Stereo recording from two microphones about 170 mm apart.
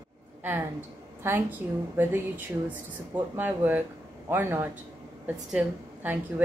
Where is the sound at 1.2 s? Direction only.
10° right (ahead or behind).